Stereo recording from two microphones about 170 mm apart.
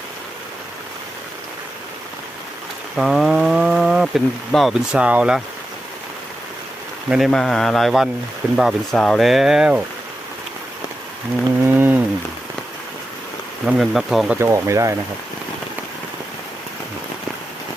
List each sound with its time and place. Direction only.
2.9 s speech: centre (ahead or behind)
7.1 s speech: centre (ahead or behind)
11.6 s speech: 10° right (ahead or behind)
13.7 s speech: centre (ahead or behind)
14.3 s speech: 15° right (ahead or behind)